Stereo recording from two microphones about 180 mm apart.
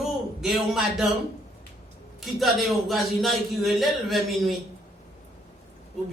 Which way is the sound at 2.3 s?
Centre (ahead or behind).